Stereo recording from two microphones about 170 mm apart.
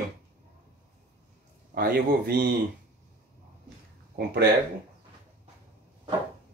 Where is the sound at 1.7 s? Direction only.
65° right (ahead or behind).